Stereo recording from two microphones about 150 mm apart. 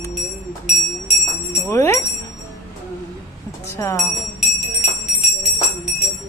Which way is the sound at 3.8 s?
20° left (ahead or behind).